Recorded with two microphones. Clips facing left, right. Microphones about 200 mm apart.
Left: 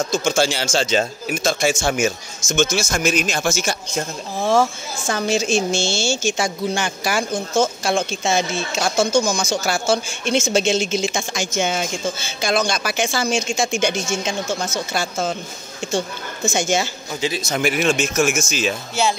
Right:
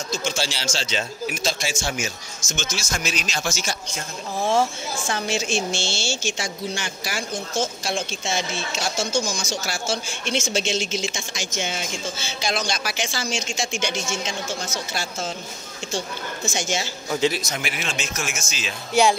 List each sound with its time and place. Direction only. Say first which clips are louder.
0.1 s a woman's voice: left 5 dB; 50° left (ahead or behind)
16.4 s a woman's voice: left 7 dB; 55° left (ahead or behind)
17.3 s speech: left 4 dB; 25° left (ahead or behind)
17.6 s a woman's voice: left 11 dB; 45° left (ahead or behind)